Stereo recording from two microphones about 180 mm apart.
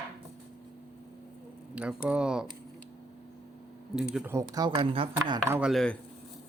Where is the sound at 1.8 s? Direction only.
5° right (ahead or behind).